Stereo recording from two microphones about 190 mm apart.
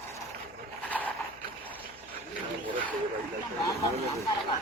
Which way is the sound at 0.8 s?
10° left (ahead or behind).